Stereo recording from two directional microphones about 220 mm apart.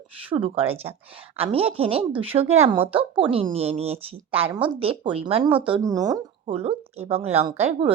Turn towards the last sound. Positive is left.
turn(degrees=-25)  # may be behind; listen again after turning